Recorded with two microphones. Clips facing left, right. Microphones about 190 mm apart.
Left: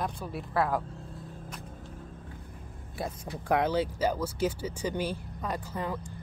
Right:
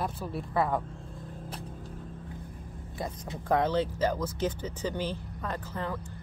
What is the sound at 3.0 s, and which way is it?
Speech, 10° left (ahead or behind).